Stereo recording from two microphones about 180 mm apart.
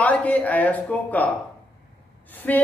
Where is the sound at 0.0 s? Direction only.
10° left (ahead or behind).